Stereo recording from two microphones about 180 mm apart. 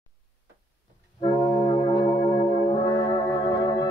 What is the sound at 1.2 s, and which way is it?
Organ, 30° left (ahead or behind).